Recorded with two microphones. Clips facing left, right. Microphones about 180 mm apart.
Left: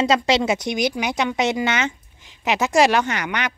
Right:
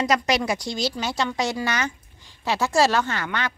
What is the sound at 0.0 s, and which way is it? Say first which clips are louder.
Speech: left 4 dB; 25° left (ahead or behind).